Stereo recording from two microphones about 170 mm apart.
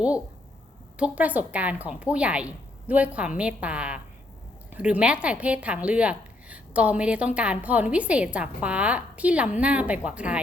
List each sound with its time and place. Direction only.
0.9 s a woman's voice: 10° right (ahead or behind)